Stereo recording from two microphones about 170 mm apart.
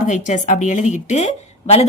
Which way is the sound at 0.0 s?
45° left (ahead or behind).